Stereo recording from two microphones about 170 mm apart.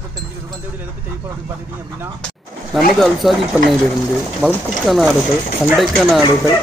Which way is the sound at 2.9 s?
Centre (ahead or behind).